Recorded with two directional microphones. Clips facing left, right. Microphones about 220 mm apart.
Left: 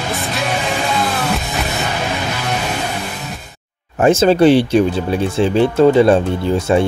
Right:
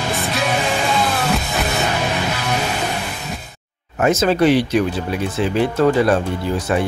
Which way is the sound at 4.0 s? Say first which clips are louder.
Left 4 dB; 30° left (ahead or behind).